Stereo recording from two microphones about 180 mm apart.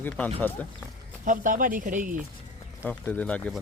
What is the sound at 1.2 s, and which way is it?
Speech, 50° right (ahead or behind).